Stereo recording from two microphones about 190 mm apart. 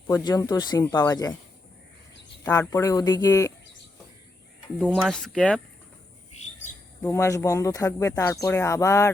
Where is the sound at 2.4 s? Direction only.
10° left (ahead or behind).